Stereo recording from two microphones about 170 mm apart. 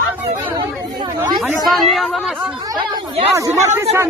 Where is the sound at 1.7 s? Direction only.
Centre (ahead or behind).